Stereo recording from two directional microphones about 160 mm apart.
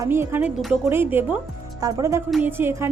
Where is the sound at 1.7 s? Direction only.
20° right (ahead or behind).